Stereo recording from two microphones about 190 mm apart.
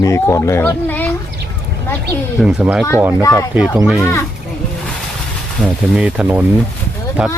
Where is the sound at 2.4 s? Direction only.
5° right (ahead or behind).